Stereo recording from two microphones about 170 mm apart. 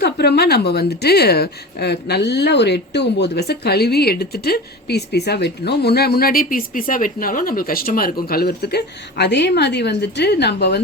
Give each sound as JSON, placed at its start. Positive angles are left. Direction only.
{"t": 0.0, "sound": "a woman's voice", "side_deg": 75}